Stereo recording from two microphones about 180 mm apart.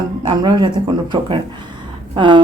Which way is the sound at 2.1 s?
25° right (ahead or behind).